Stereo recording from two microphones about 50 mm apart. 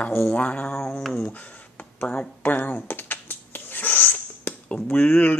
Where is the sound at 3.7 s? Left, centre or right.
Left.